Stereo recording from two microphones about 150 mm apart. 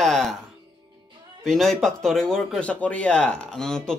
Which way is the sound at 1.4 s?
5° left (ahead or behind).